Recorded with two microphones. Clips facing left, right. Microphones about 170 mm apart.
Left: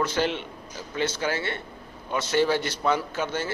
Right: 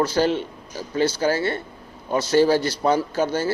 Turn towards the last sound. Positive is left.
turn(degrees=-35)  # may be behind; listen again after turning